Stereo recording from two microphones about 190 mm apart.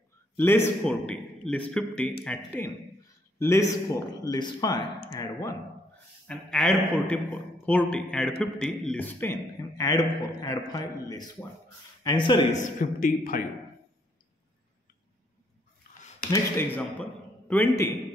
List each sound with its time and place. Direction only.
0.4 s a man's voice: 10° left (ahead or behind)
6.2 s a man's voice: 5° left (ahead or behind); by 12.4 s 25° left (ahead or behind)
12.5 s a man's voice: 45° left (ahead or behind)
16.3 s a man's voice: 10° left (ahead or behind)